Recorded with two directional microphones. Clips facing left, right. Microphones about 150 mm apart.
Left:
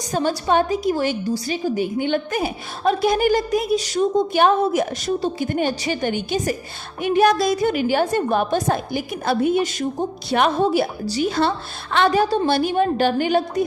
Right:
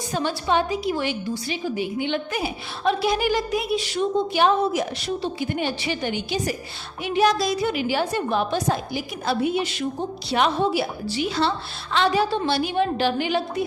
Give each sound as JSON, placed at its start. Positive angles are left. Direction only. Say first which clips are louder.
{"t": 0.0, "sound": "a woman's voice", "louder": "left 4 dB", "side_deg": 45}